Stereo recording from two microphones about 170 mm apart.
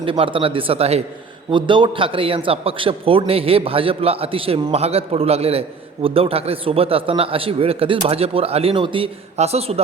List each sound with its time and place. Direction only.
0.0 s a man's voice: 30° right (ahead or behind)